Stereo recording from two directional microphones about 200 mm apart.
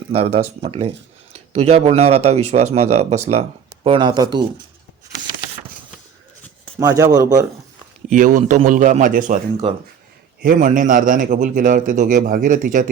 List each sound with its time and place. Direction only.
0.1 s a man's voice: 30° right (ahead or behind)
6.7 s speech: 15° right (ahead or behind)
8.1 s a man's voice: 40° right (ahead or behind)